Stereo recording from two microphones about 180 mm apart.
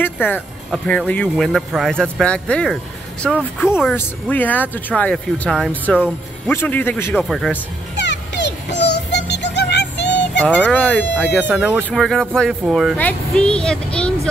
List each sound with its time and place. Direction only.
0.0 s speech: 10° left (ahead or behind)
5.9 s speech: 5° right (ahead or behind)
6.5 s speech: 10° left (ahead or behind)
7.2 s speech: centre (ahead or behind)
8.0 s music: 75° left (ahead or behind)
10.4 s speech: 5° left (ahead or behind)
11.4 s speech: 5° right (ahead or behind)